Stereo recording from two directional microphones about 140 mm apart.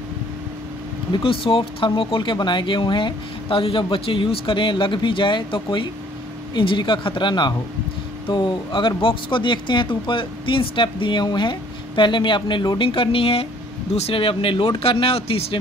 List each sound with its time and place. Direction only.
1.1 s speech: 40° left (ahead or behind)